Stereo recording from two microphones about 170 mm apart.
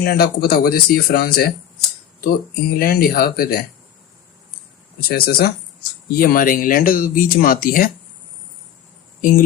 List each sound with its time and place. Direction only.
0.0 s speech: 70° left (ahead or behind)
4.9 s speech: 65° left (ahead or behind)